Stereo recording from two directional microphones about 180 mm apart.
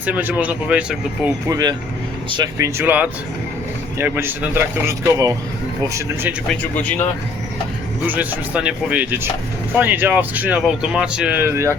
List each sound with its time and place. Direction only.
0.0 s speech: 10° right (ahead or behind)
1.5 s speech: 20° right (ahead or behind)
6.5 s speech: 10° left (ahead or behind)
8.0 s speech: 10° right (ahead or behind)